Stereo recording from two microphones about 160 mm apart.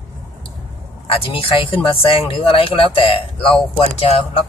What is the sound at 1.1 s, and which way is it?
Speech, 35° left (ahead or behind).